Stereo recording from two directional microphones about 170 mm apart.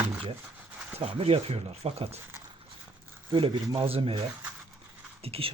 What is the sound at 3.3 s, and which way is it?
Speech, 30° right (ahead or behind).